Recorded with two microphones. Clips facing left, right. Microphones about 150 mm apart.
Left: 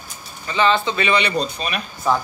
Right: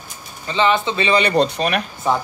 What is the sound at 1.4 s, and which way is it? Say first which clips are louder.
Speech: right 6 dB; 65° right (ahead or behind).